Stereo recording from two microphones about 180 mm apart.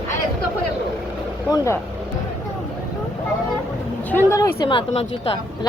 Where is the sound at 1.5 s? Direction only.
20° left (ahead or behind).